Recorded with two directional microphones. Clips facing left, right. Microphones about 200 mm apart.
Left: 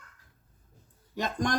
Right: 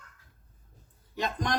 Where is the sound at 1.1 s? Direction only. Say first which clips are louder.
Left 2 dB; 45° left (ahead or behind).